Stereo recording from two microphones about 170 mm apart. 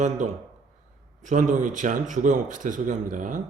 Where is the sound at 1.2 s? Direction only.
45° right (ahead or behind).